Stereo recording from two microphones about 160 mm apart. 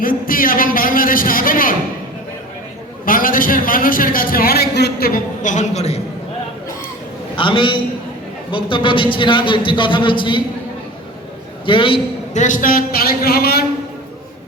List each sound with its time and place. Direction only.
0.0 s a man's voice: 60° left (ahead or behind)
3.1 s a man's voice: 60° left (ahead or behind); by 6.0 s 45° left (ahead or behind)
7.3 s a man's voice: 30° left (ahead or behind)
11.6 s a man's voice: 30° left (ahead or behind)
12.3 s a man's voice: 50° left (ahead or behind); by 13.7 s 75° left (ahead or behind)